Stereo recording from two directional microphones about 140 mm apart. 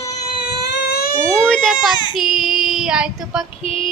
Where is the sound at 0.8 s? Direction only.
90° left.